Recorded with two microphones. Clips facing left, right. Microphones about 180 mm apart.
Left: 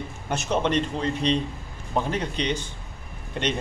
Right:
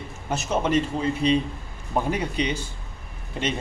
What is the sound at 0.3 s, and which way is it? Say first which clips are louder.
A man's voice: right 1 dB; 5° right (ahead or behind).